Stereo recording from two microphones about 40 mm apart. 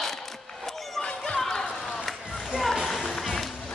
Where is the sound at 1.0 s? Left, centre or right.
Left.